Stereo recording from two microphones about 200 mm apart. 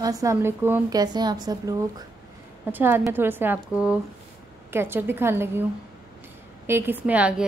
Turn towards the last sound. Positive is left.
turn(degrees=-5)  # may be behind; listen again after turning